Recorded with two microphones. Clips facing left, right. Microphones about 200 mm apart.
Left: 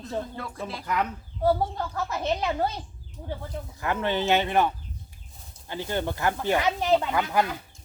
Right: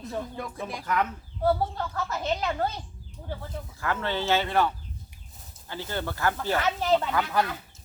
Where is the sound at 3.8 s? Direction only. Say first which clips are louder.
Left 3 dB; 15° left (ahead or behind).